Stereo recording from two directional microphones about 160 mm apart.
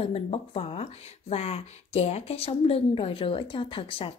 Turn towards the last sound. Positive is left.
turn(degrees=35)  # may be behind; listen again after turning